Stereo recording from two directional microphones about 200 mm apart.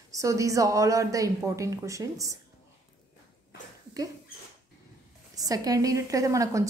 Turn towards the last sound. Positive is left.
turn(degrees=-15)  # may be behind; listen again after turning